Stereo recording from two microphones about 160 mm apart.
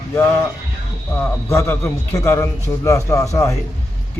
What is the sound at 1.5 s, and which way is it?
A man's voice, 15° left (ahead or behind).